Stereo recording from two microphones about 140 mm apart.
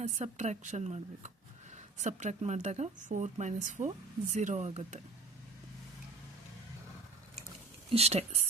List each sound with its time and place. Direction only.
0.0 s speech: 60° right (ahead or behind)
7.9 s speech: 45° right (ahead or behind)